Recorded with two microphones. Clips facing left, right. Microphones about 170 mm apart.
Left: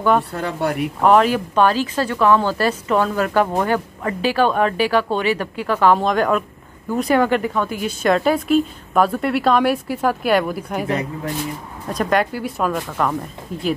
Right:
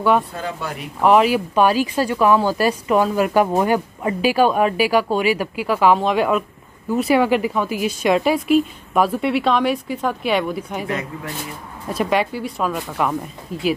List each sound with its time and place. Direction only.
0.3 s speech: 65° left (ahead or behind)
1.0 s speech: 5° right (ahead or behind)
11.9 s speech: 5° right (ahead or behind)